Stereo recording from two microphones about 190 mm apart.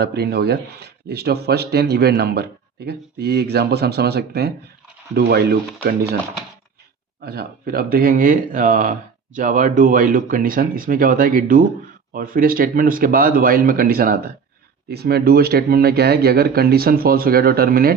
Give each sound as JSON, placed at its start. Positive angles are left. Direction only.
{"t": 0.0, "sound": "speech", "side_deg": -55}
{"t": 7.3, "sound": "speech", "side_deg": -55}